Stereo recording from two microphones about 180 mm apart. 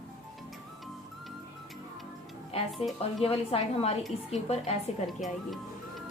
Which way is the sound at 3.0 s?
35° left (ahead or behind).